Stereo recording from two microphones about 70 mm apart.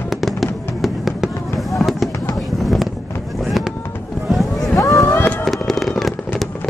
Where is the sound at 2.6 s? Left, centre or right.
Centre.